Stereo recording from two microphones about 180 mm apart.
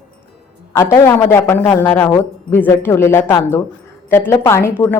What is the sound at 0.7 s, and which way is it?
A woman's voice, 15° left (ahead or behind).